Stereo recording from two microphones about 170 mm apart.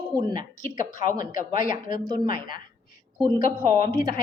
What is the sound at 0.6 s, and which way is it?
A woman's voice, 50° left (ahead or behind).